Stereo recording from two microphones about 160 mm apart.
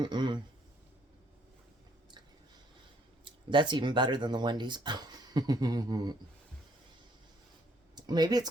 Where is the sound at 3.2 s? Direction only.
30° right (ahead or behind).